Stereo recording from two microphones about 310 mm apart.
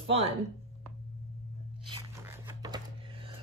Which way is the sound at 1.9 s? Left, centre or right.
Centre.